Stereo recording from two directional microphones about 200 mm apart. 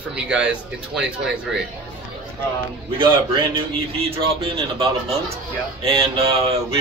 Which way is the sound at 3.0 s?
25° right (ahead or behind).